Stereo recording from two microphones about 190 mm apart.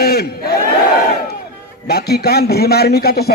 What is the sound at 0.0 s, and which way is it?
Crowd, 55° left (ahead or behind).